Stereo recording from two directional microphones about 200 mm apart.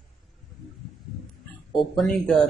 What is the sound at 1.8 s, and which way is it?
Speech, centre (ahead or behind).